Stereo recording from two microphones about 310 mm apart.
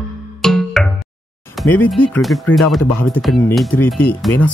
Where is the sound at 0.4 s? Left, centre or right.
Centre.